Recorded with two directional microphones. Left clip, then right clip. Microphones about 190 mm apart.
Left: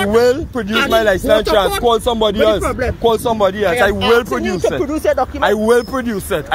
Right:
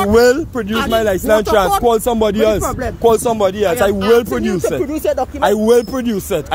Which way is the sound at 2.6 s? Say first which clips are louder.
Left 2 dB; 30° right (ahead or behind).